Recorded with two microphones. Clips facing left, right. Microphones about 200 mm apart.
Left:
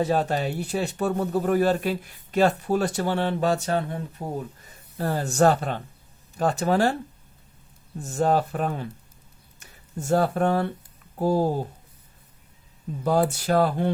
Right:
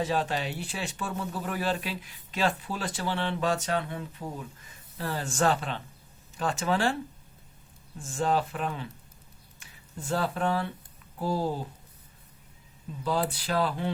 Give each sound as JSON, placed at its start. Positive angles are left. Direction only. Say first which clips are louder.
{"t": 0.0, "sound": "speech", "louder": "left 5 dB", "side_deg": 40}
{"t": 7.9, "sound": "speech", "louder": "left 5 dB", "side_deg": 40}
{"t": 13.1, "sound": "speech", "louder": "left 7 dB", "side_deg": 45}